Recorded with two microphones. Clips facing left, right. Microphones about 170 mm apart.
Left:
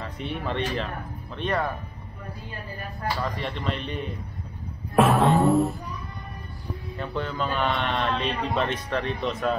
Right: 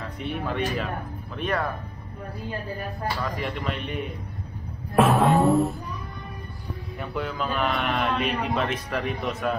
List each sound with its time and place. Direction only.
0.0 s speech: centre (ahead or behind)
3.3 s speech: 5° right (ahead or behind)
4.9 s music: centre (ahead or behind)
7.0 s speech: 5° right (ahead or behind)